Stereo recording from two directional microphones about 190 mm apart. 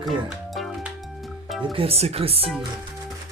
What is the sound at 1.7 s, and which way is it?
Speech, 30° right (ahead or behind).